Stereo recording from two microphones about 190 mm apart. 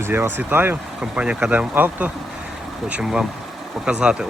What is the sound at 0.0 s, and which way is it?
Speech, 10° right (ahead or behind).